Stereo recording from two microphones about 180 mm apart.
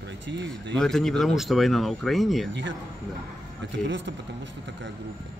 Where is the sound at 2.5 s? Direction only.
85° right.